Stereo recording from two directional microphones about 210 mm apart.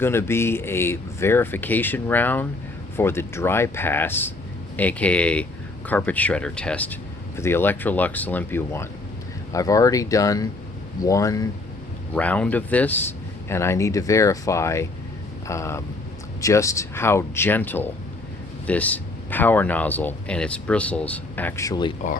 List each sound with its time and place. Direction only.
0.0 s speech: 10° left (ahead or behind)